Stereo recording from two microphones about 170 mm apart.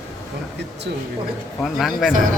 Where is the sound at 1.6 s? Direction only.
Centre (ahead or behind).